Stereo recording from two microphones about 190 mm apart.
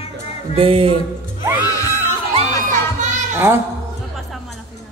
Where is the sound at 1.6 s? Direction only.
20° left (ahead or behind).